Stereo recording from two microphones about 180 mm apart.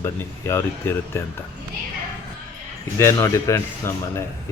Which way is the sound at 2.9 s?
15° left (ahead or behind).